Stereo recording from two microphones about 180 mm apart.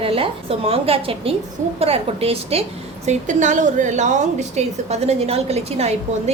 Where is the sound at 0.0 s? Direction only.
30° right (ahead or behind).